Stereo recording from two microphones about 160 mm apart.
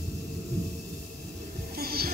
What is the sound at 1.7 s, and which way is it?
Music, 75° right (ahead or behind).